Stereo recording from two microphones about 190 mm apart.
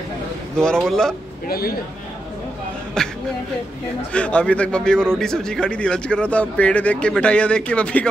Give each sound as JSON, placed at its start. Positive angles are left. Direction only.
{"t": 0.6, "sound": "speech", "side_deg": 5}
{"t": 1.5, "sound": "a man's voice", "side_deg": 50}
{"t": 3.0, "sound": "speech", "side_deg": 5}